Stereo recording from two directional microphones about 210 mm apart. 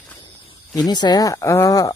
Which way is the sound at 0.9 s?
20° left (ahead or behind).